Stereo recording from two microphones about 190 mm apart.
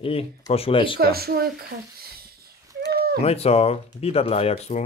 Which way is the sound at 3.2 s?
35° left (ahead or behind).